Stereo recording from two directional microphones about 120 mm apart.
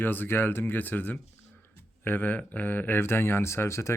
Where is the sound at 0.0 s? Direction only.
15° left (ahead or behind).